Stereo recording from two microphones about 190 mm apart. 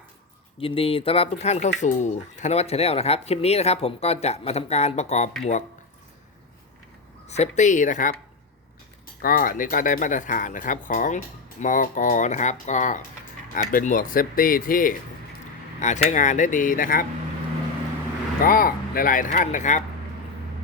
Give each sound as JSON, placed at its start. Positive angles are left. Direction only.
{"t": 0.6, "sound": "speech", "side_deg": 30}
{"t": 7.3, "sound": "speech", "side_deg": 35}
{"t": 9.2, "sound": "speech", "side_deg": 50}
{"t": 18.4, "sound": "speech", "side_deg": 50}